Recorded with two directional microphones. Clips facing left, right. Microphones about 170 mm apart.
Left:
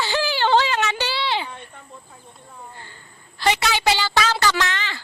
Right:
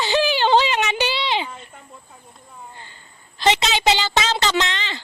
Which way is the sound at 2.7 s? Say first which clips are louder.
Left 1 dB; 20° right (ahead or behind).